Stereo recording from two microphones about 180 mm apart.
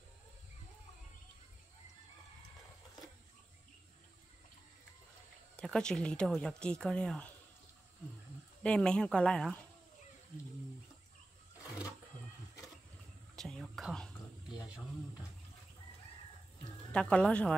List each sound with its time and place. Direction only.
5.6 s speech: 5° left (ahead or behind)
8.6 s speech: 5° left (ahead or behind)
13.4 s whispering: centre (ahead or behind)
16.9 s speech: 5° left (ahead or behind)